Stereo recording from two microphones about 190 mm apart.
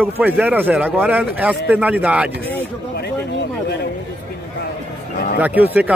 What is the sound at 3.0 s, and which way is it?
Speech, 60° left (ahead or behind).